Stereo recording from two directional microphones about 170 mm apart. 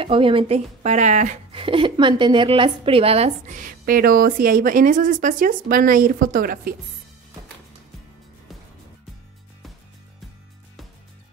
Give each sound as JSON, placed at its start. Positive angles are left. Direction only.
{"t": 0.0, "sound": "speech", "side_deg": -30}
{"t": 1.5, "sound": "a woman's voice", "side_deg": -30}